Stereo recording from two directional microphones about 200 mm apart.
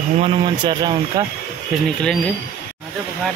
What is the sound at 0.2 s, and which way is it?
Speech, 20° right (ahead or behind).